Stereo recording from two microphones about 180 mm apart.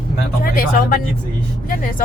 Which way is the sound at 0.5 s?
55° left (ahead or behind).